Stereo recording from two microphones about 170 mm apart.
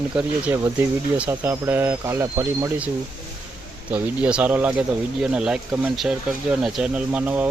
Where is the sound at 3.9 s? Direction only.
5° right (ahead or behind).